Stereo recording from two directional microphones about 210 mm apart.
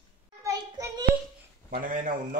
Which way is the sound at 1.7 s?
40° right (ahead or behind).